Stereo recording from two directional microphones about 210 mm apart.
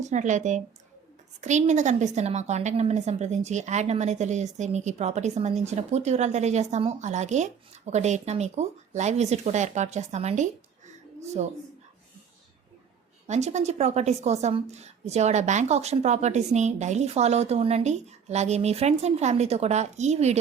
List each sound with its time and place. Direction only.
0.0 s a woman's voice: 35° right (ahead or behind)
13.2 s a woman's voice: 35° right (ahead or behind)